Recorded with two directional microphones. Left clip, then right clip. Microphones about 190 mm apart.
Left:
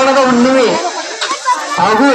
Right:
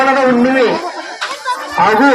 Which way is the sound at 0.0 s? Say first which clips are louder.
Left 1 dB; 25° left (ahead or behind).